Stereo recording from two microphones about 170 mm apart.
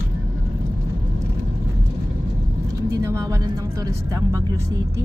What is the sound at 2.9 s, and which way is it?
Speech, 20° right (ahead or behind).